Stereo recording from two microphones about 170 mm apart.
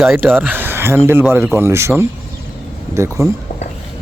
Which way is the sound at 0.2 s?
10° right (ahead or behind).